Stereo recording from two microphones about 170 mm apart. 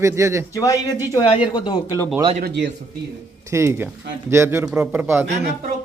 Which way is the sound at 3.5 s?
15° right (ahead or behind).